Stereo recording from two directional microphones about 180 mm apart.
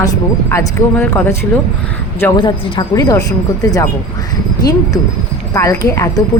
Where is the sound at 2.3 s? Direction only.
25° left (ahead or behind).